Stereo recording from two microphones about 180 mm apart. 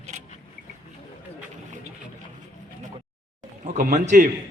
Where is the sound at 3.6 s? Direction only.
40° right (ahead or behind).